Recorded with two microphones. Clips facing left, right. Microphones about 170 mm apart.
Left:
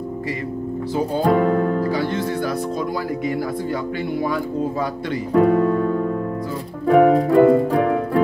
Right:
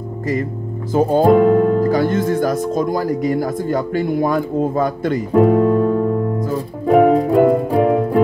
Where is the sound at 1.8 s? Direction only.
45° right (ahead or behind).